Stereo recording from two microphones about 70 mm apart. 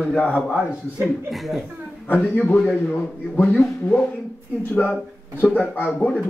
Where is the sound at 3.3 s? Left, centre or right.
Left.